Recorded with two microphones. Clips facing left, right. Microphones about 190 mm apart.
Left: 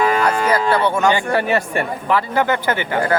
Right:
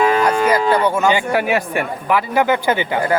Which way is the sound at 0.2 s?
10° right (ahead or behind).